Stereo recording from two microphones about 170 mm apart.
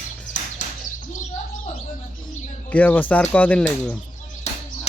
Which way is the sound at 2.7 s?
10° left (ahead or behind).